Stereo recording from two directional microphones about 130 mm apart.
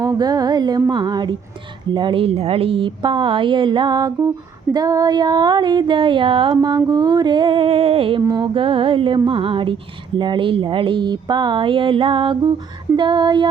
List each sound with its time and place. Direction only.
0.0 s speech: 30° right (ahead or behind)
8.2 s speech: 30° right (ahead or behind)
8.5 s speech: 45° right (ahead or behind)